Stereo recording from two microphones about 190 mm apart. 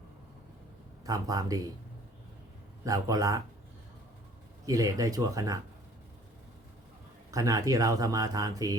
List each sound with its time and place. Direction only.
1.0 s speech: 20° right (ahead or behind)
2.8 s speech: 20° right (ahead or behind)
4.6 s speech: 20° right (ahead or behind)
7.3 s speech: 15° right (ahead or behind)